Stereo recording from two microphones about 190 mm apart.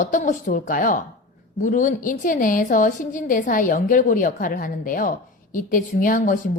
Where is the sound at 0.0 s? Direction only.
45° left (ahead or behind).